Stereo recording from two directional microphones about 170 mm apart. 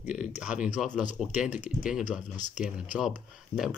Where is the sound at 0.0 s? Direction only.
5° right (ahead or behind).